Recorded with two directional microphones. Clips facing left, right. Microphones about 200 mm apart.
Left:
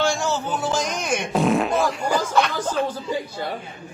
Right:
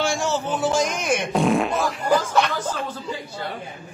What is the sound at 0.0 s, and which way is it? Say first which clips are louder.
Fart: left 1 dB; 5° right (ahead or behind).